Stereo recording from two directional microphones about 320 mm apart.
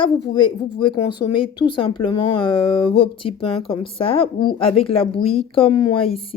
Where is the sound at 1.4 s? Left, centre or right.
Centre.